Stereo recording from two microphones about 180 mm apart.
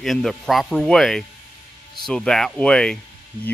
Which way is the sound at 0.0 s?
Centre (ahead or behind).